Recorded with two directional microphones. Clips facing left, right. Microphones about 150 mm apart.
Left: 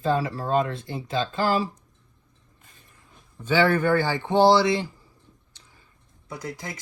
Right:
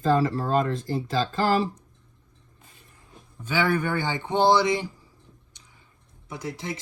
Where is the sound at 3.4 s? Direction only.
10° right (ahead or behind).